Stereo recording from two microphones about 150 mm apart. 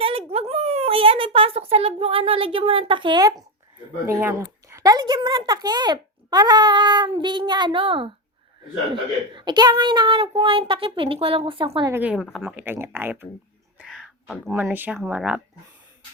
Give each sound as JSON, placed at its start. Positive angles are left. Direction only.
{"t": 0.0, "sound": "a sound", "side_deg": -40}
{"t": 4.0, "sound": "speech", "side_deg": -15}
{"t": 9.3, "sound": "speech", "side_deg": -30}
{"t": 11.9, "sound": "speech", "side_deg": -10}
{"t": 13.7, "sound": "a sound", "side_deg": -5}
{"t": 14.5, "sound": "speech", "side_deg": -15}